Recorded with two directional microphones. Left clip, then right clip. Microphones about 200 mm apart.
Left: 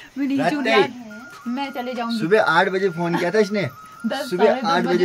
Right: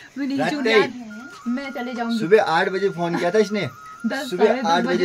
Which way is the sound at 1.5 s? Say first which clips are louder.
Left 2 dB; centre (ahead or behind).